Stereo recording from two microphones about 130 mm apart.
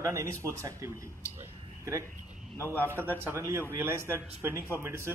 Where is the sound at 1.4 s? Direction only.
20° right (ahead or behind).